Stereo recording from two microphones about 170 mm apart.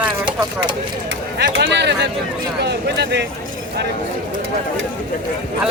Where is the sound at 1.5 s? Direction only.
90° right.